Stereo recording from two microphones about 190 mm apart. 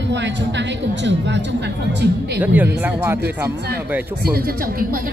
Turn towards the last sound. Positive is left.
turn(degrees=-10)  # may be behind; listen again after turning